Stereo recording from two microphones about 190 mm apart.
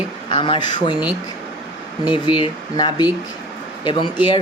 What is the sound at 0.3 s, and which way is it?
Speech, 25° left (ahead or behind).